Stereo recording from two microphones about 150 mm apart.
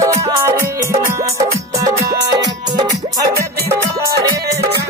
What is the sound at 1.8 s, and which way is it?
Music, 20° right (ahead or behind).